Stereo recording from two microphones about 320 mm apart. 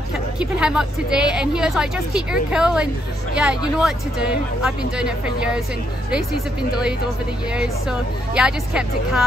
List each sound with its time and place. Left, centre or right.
0.4 s a woman's voice: centre